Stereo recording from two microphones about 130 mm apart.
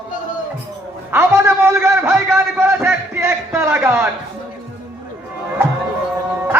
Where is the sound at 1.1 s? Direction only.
20° right (ahead or behind).